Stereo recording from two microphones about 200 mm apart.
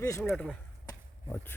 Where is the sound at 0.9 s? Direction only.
10° left (ahead or behind).